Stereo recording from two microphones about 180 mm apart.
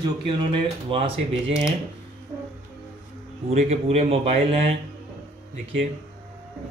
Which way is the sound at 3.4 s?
35° right (ahead or behind).